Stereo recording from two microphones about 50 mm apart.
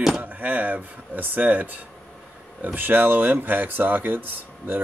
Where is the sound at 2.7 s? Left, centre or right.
Right.